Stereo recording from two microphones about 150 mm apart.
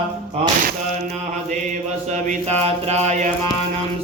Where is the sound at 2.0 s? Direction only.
55° right (ahead or behind).